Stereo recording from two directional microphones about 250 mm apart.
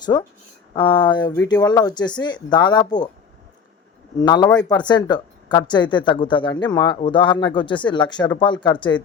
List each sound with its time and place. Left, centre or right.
0.0 s speech: centre
4.2 s speech: centre